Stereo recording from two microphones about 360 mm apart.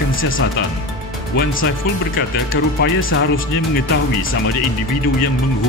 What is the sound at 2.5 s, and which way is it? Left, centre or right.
Speech, left.